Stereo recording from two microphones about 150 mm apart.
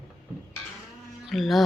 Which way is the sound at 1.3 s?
Centre (ahead or behind).